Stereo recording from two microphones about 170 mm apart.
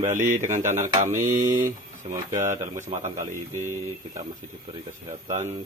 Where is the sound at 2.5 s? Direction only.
45° right (ahead or behind).